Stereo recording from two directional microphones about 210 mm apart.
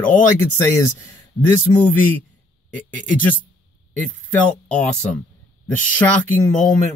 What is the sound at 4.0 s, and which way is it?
Speech, 5° left (ahead or behind).